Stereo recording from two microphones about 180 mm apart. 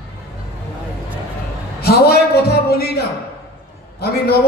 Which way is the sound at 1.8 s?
60° left (ahead or behind).